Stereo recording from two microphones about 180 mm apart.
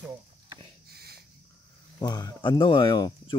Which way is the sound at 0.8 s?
60° right (ahead or behind).